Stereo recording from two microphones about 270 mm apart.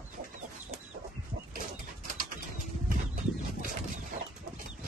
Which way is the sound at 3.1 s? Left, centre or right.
Right.